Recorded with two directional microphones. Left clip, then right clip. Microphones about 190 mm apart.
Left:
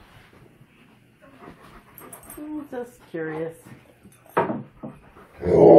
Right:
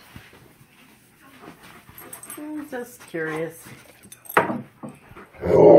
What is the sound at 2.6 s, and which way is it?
Speech, 30° right (ahead or behind).